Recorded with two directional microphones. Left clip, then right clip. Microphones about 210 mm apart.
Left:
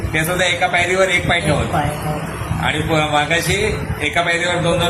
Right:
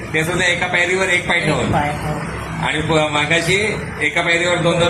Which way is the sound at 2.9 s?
20° left (ahead or behind).